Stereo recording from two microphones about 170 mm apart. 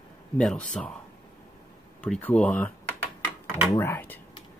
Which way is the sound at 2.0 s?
5° left (ahead or behind).